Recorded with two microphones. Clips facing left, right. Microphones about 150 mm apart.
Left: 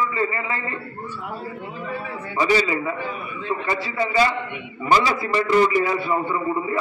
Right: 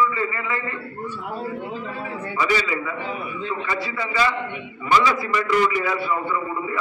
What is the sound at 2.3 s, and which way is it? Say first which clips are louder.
A man's voice: left 3 dB; 35° left (ahead or behind).